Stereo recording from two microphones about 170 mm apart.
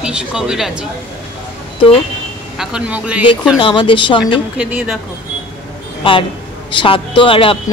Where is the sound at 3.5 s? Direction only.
30° left (ahead or behind).